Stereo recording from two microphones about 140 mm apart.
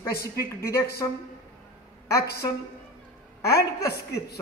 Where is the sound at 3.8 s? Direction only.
25° left (ahead or behind).